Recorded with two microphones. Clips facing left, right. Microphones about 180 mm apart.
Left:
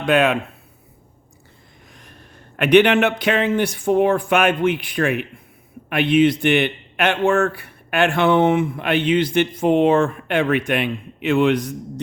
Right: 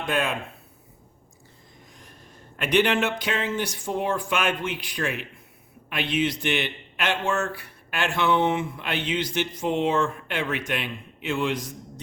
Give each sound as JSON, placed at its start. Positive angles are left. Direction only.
{"t": 0.0, "sound": "speech", "side_deg": 70}
{"t": 1.9, "sound": "a sound", "side_deg": 70}
{"t": 2.6, "sound": "a man's voice", "side_deg": 65}